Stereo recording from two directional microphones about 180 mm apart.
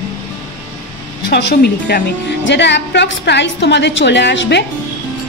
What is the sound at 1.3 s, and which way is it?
Speech, 70° left (ahead or behind).